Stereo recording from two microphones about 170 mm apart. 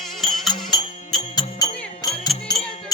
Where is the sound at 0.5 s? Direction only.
25° left (ahead or behind).